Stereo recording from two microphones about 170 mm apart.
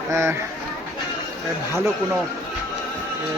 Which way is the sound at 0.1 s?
15° right (ahead or behind).